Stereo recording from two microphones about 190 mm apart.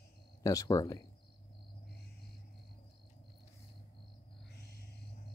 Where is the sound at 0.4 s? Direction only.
15° left (ahead or behind).